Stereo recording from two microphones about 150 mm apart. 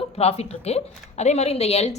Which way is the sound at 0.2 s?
45° left (ahead or behind).